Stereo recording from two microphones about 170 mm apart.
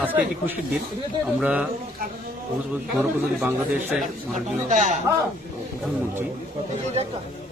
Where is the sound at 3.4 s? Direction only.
10° right (ahead or behind).